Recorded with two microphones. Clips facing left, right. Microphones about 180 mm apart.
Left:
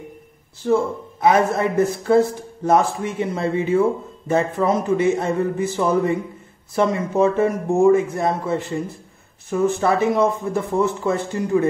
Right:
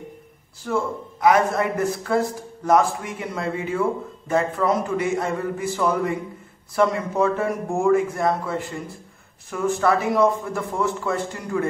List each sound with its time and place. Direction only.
0.6 s a man's voice: 25° left (ahead or behind)